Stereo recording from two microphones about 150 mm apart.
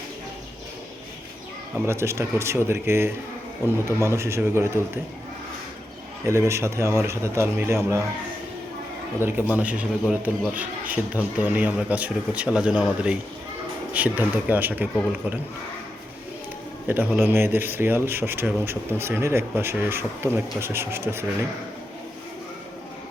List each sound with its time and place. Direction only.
1.9 s speech: 20° right (ahead or behind)
6.2 s speech: 20° right (ahead or behind)
9.2 s speech: 10° right (ahead or behind)
16.8 s speech: 10° right (ahead or behind)